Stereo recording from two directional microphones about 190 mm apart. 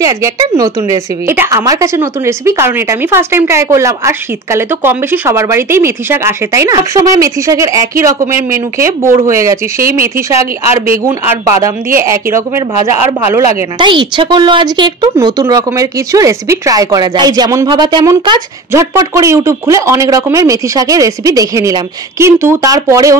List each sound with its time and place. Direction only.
0.0 s a woman's voice: 20° right (ahead or behind)
11.1 s a woman's voice: 15° right (ahead or behind)
13.7 s a woman's voice: 25° right (ahead or behind)